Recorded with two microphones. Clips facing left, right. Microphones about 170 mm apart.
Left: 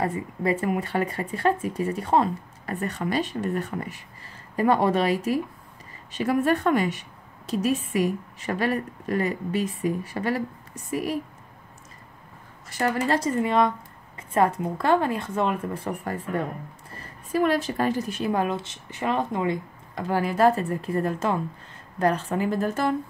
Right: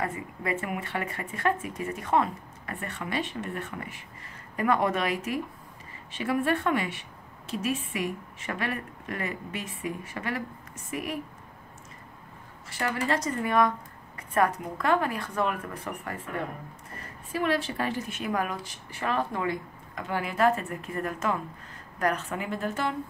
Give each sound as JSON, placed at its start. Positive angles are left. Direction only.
{"t": 0.0, "sound": "a woman's voice", "side_deg": 35}
{"t": 12.6, "sound": "a woman's voice", "side_deg": 40}
{"t": 20.0, "sound": "a woman's voice", "side_deg": 35}